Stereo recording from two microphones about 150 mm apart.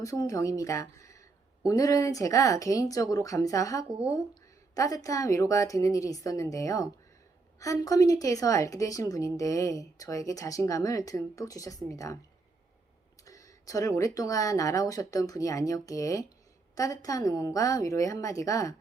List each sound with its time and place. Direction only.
0.0 s a woman's voice: 20° left (ahead or behind)
13.2 s a sound: 20° left (ahead or behind)
14.2 s a woman's voice: 20° left (ahead or behind)